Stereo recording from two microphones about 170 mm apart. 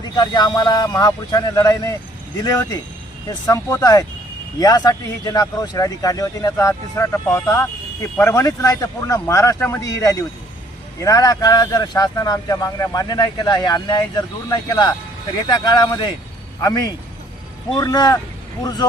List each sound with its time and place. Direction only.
0.0 s speech: 25° left (ahead or behind)